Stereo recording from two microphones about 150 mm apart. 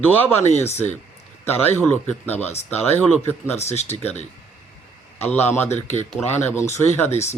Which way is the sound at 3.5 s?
45° left (ahead or behind).